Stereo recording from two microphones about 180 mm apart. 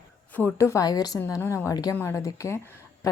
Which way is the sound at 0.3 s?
10° left (ahead or behind).